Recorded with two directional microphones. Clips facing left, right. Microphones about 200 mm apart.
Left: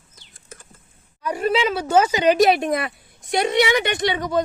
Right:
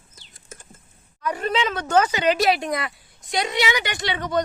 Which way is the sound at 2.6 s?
25° left (ahead or behind).